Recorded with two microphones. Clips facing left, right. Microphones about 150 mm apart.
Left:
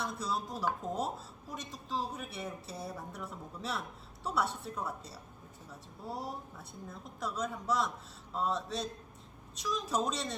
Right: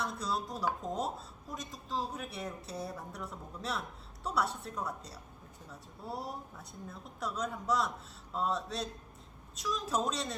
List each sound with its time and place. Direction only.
0.0 s a woman's voice: centre (ahead or behind)